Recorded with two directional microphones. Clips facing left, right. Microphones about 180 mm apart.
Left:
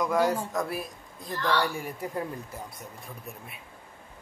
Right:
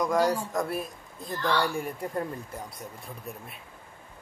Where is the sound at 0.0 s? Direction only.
5° left (ahead or behind).